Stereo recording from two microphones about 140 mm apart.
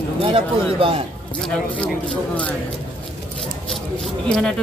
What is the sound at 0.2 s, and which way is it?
Speech, 40° right (ahead or behind).